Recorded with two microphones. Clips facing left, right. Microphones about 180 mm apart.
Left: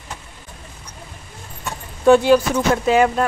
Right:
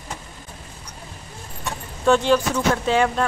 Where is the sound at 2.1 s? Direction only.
10° left (ahead or behind).